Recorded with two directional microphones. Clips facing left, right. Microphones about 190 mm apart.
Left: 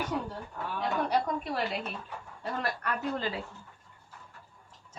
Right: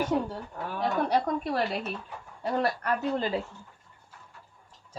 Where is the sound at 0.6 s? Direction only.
35° right (ahead or behind).